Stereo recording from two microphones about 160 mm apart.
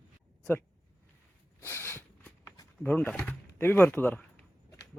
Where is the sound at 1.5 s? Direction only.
15° left (ahead or behind).